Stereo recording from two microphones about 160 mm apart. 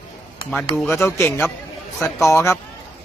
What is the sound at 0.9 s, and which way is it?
A man's voice, 15° left (ahead or behind).